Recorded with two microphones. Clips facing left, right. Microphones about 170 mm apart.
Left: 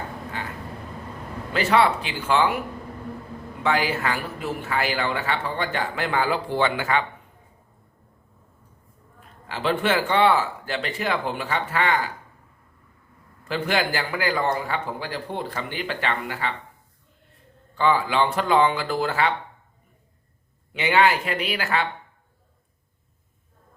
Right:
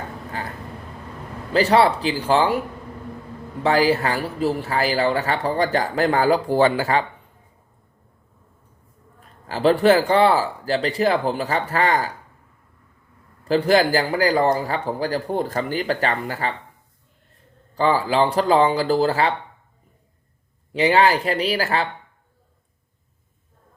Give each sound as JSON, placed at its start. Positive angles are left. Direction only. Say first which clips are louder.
{"t": 1.5, "sound": "speech", "louder": "right 4 dB", "side_deg": -35}
{"t": 3.6, "sound": "speech", "louder": "right 6 dB", "side_deg": -35}
{"t": 9.5, "sound": "speech", "louder": "right 8 dB", "side_deg": -40}
{"t": 13.4, "sound": "speech", "louder": "right 8 dB", "side_deg": -35}
{"t": 17.7, "sound": "speech", "louder": "right 3 dB", "side_deg": -35}
{"t": 20.7, "sound": "speech", "louder": "right 3 dB", "side_deg": -35}